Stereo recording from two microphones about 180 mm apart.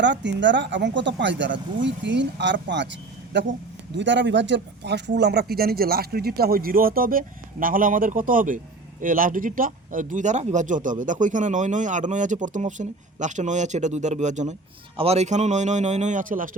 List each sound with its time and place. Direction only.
0.0 s speech: 80° right; by 16.5 s 45° right (ahead or behind)